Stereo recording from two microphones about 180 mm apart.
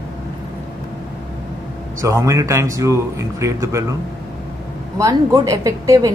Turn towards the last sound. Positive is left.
turn(degrees=-20)  # may be behind; listen again after turning